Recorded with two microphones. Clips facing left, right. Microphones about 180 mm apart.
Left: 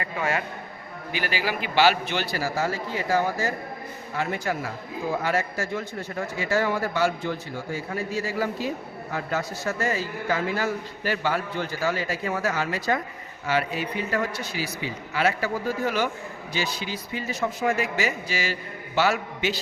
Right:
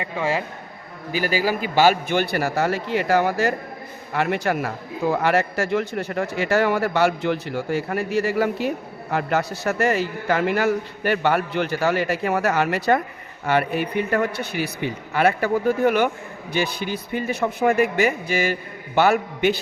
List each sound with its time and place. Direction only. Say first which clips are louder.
0.0 s a man's voice: right 3 dB; 30° right (ahead or behind)
1.1 s a man's voice: right 6 dB; 40° right (ahead or behind)